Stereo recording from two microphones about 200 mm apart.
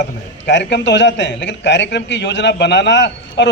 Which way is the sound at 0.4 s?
60° left (ahead or behind).